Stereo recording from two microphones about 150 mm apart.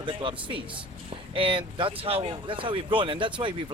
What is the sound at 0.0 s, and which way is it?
Speech, 35° right (ahead or behind).